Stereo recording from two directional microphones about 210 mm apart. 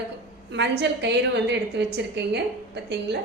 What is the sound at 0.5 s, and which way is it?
A woman's voice, 55° right (ahead or behind).